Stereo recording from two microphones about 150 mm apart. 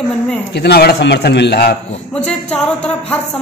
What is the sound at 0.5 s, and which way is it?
A man's voice, 90° left.